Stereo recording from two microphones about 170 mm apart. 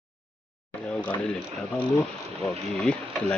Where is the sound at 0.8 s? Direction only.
5° left (ahead or behind).